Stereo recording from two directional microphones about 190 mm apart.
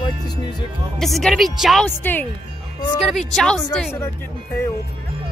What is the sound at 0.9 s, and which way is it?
Speech, centre (ahead or behind).